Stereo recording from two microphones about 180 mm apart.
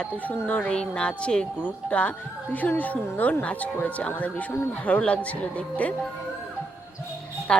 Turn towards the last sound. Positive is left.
turn(degrees=5)  # may be behind; listen again after turning